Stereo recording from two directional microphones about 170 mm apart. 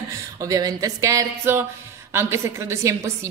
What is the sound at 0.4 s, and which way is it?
A woman's voice, 20° right (ahead or behind).